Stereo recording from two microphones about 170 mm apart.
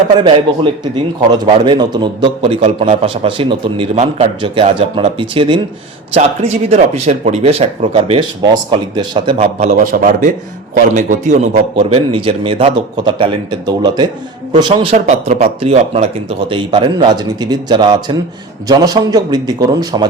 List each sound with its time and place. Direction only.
0.2 s speech: 30° right (ahead or behind)
9.4 s a man's voice: 45° right (ahead or behind)
11.8 s speech: 30° right (ahead or behind)